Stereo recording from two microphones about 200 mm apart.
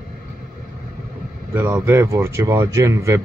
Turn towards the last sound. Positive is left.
turn(degrees=-15)  # may be behind; listen again after turning